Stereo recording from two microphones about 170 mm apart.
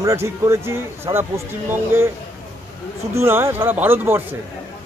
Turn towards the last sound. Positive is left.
turn(degrees=-15)  # may be behind; listen again after turning